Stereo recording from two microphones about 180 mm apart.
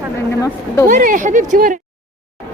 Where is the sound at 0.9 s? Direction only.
50° right (ahead or behind).